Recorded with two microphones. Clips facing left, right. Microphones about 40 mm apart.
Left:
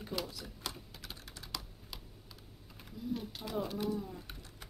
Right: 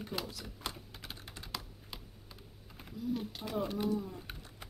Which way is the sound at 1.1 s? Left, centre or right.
Centre.